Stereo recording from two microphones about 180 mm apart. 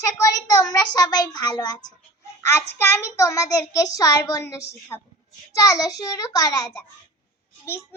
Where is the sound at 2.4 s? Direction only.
15° left (ahead or behind).